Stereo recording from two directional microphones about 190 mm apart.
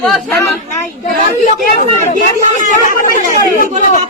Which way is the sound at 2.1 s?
45° left (ahead or behind).